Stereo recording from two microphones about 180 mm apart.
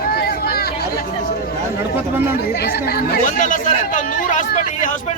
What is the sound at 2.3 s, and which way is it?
Speech, 60° left (ahead or behind).